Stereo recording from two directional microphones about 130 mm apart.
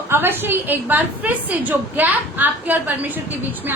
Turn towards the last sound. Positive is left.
turn(degrees=-15)  # may be behind; listen again after turning